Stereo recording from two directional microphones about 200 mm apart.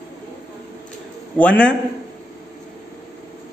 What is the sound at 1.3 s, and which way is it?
Speech, 5° left (ahead or behind).